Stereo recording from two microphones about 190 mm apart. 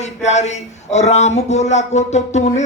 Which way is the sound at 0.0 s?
35° left (ahead or behind).